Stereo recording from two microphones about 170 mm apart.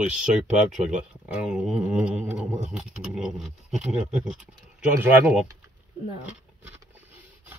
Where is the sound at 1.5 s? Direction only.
5° right (ahead or behind).